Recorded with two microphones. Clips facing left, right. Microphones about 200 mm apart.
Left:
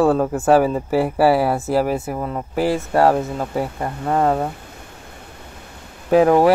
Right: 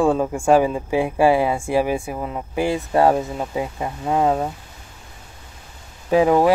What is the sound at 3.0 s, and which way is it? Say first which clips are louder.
Speech: left 1 dB; centre (ahead or behind).